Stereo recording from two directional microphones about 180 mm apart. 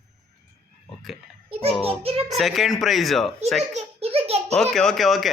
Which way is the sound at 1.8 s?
30° right (ahead or behind).